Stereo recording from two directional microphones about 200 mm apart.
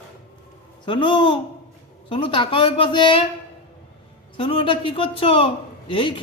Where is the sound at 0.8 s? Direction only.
25° left (ahead or behind).